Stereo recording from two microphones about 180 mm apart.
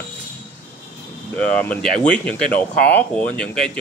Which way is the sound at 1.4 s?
5° left (ahead or behind).